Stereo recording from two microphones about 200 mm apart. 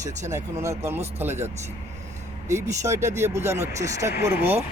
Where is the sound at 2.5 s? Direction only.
15° right (ahead or behind).